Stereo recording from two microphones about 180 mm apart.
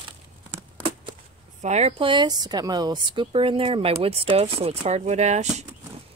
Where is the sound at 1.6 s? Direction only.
35° right (ahead or behind).